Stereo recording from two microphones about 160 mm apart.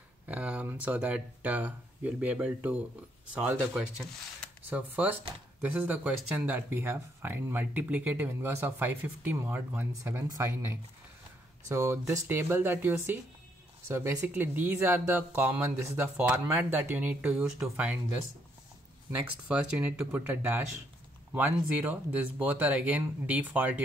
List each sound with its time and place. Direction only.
0.3 s speech: 10° right (ahead or behind)
4.6 s speech: 10° right (ahead or behind)
19.2 s speech: 5° right (ahead or behind)